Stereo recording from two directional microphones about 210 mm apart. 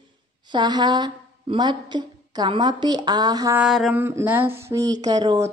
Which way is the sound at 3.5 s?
Centre (ahead or behind).